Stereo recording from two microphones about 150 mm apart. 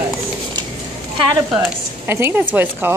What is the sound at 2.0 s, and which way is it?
Speech, 15° right (ahead or behind).